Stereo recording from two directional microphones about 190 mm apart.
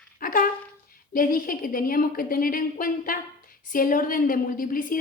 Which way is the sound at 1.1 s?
45° left (ahead or behind).